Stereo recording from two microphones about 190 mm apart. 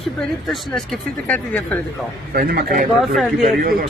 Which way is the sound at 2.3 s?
50° right (ahead or behind).